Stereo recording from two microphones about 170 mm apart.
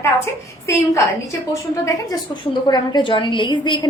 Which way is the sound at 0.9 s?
15° left (ahead or behind).